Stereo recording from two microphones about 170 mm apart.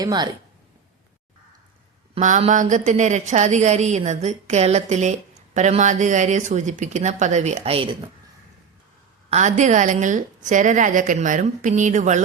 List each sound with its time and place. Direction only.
0.0 s a woman's voice: 25° right (ahead or behind)
2.1 s a woman's voice: 40° right (ahead or behind)
9.3 s a woman's voice: 45° right (ahead or behind)